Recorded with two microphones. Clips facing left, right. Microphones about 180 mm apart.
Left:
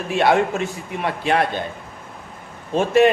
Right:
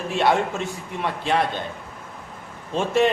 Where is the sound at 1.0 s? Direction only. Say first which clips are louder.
Left 3 dB; 60° left (ahead or behind).